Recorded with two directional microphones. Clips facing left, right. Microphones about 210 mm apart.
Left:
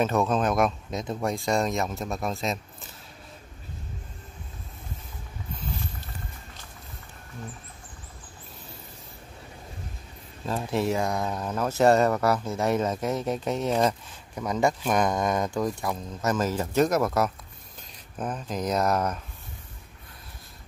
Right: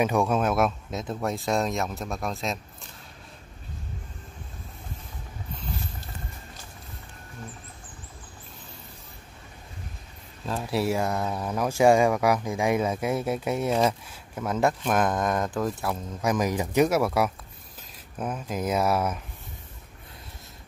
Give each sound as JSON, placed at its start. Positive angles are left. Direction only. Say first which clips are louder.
{"t": 0.0, "sound": "speech", "louder": "even", "side_deg": -10}
{"t": 10.4, "sound": "speech", "louder": "even", "side_deg": 0}